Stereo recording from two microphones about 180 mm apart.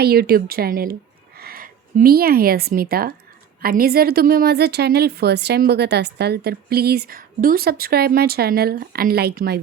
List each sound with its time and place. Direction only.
0.0 s a woman's voice: 60° right (ahead or behind)